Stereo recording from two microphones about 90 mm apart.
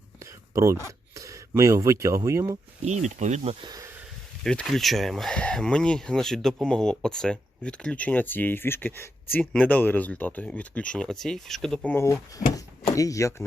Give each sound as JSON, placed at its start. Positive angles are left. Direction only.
{"t": 0.2, "sound": "speech", "side_deg": -35}
{"t": 4.4, "sound": "speech", "side_deg": 5}
{"t": 12.0, "sound": "speech", "side_deg": 40}